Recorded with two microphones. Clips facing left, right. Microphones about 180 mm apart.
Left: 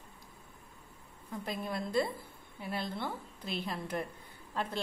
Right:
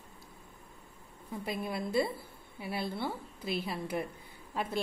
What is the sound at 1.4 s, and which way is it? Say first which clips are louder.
A woman's voice: right 2 dB; 10° right (ahead or behind).